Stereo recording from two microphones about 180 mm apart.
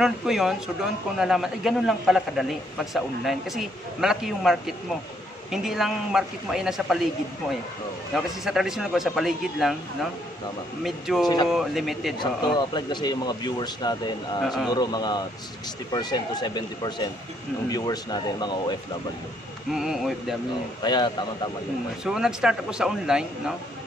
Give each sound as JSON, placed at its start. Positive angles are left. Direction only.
{"t": 0.0, "sound": "a man's voice", "side_deg": 0}
{"t": 8.1, "sound": "a man's voice", "side_deg": 0}
{"t": 10.8, "sound": "a man's voice", "side_deg": 0}
{"t": 12.5, "sound": "speech", "side_deg": 25}
{"t": 14.4, "sound": "a man's voice", "side_deg": 0}
{"t": 14.7, "sound": "speech", "side_deg": 20}
{"t": 19.7, "sound": "a man's voice", "side_deg": 0}
{"t": 20.8, "sound": "speech", "side_deg": 25}
{"t": 22.0, "sound": "a man's voice", "side_deg": -5}